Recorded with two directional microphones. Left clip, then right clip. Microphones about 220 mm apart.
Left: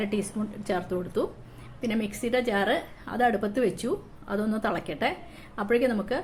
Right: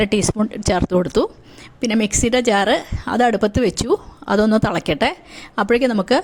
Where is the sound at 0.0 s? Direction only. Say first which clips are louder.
Right 12 dB; 45° right (ahead or behind).